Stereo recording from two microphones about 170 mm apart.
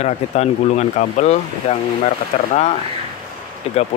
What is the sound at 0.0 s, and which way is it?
Speech, 40° left (ahead or behind).